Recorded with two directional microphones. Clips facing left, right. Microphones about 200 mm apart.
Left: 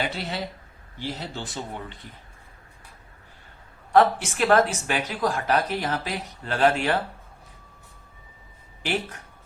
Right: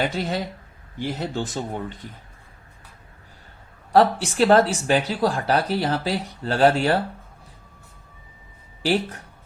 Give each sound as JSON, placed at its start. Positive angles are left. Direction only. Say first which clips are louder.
{"t": 0.2, "sound": "speech", "louder": "right 5 dB", "side_deg": -45}
{"t": 3.9, "sound": "speech", "louder": "right 2 dB", "side_deg": -35}
{"t": 8.8, "sound": "speech", "louder": "right 6 dB", "side_deg": -35}